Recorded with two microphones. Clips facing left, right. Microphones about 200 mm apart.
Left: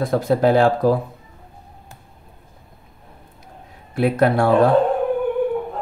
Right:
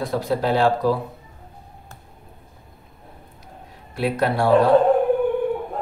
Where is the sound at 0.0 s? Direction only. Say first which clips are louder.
Left 5 dB; 50° left (ahead or behind).